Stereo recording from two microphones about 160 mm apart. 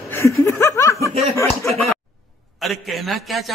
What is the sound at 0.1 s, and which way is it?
Chuckle, 15° left (ahead or behind).